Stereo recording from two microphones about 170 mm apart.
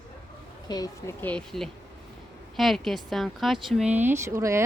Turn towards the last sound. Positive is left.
turn(degrees=-15)  # may be behind; listen again after turning